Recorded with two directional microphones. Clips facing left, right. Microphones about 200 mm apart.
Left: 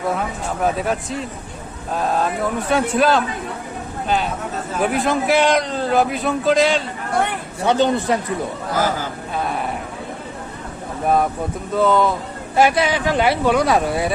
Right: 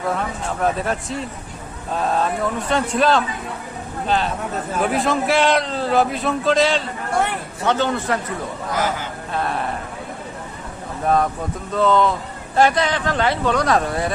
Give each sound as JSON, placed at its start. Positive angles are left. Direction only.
{"t": 0.2, "sound": "a man's voice", "side_deg": 5}
{"t": 7.6, "sound": "speech", "side_deg": 15}
{"t": 9.3, "sound": "a man's voice", "side_deg": 5}
{"t": 11.0, "sound": "a man's voice", "side_deg": 5}